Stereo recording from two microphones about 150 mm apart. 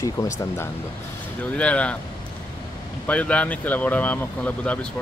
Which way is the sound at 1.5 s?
10° left (ahead or behind).